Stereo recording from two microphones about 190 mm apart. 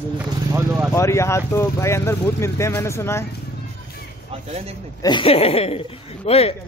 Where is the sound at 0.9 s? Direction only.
15° left (ahead or behind).